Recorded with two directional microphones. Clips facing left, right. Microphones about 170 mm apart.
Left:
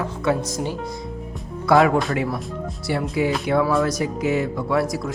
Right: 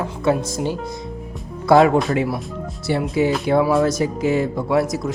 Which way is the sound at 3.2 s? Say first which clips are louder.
Right 3 dB; 25° right (ahead or behind).